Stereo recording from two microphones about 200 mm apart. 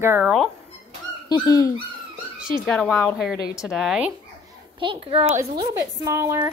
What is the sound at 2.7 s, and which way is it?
Speech, 5° left (ahead or behind).